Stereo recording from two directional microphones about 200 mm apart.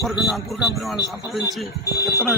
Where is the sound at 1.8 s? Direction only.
15° left (ahead or behind).